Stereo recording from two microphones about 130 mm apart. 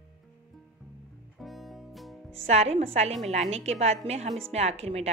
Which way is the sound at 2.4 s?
55° right (ahead or behind).